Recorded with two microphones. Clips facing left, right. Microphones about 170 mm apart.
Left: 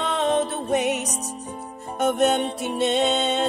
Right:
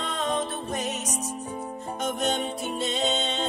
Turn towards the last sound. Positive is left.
turn(degrees=65)  # may be behind; listen again after turning